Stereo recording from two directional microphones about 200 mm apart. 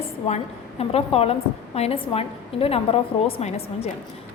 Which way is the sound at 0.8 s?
30° left (ahead or behind).